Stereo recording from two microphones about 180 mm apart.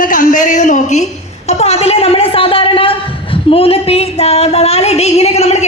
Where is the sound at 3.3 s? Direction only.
30° left (ahead or behind).